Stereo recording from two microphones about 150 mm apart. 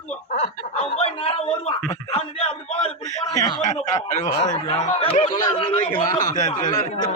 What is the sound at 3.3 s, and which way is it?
Snicker, 25° left (ahead or behind).